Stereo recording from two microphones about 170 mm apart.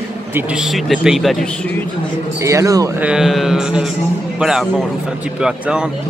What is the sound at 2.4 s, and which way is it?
Speech, 20° right (ahead or behind).